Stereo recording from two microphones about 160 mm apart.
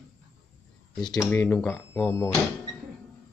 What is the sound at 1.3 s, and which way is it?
Speech, 10° left (ahead or behind).